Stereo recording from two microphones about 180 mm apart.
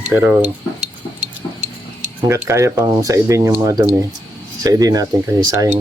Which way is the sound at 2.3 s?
15° right (ahead or behind).